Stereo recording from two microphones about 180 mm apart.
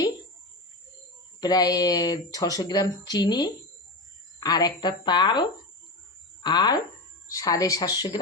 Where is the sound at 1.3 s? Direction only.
20° left (ahead or behind).